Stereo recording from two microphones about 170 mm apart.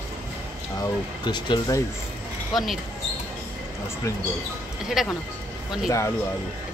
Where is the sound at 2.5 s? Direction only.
Centre (ahead or behind).